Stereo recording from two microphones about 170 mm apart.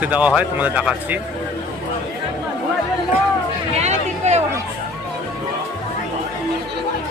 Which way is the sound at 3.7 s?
40° right (ahead or behind).